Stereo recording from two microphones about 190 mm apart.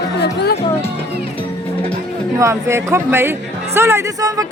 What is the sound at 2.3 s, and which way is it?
Speech, 15° right (ahead or behind).